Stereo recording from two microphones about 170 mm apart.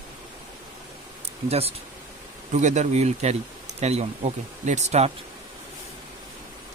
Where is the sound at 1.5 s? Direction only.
35° right (ahead or behind).